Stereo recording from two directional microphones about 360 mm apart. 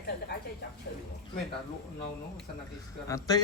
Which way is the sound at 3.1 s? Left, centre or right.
Centre.